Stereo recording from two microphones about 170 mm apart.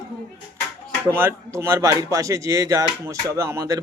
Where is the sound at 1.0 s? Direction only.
15° right (ahead or behind).